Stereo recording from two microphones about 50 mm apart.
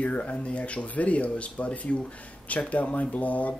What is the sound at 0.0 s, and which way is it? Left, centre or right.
Speech, left.